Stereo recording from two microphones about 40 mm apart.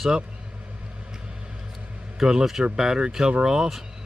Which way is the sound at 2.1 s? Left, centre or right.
Centre.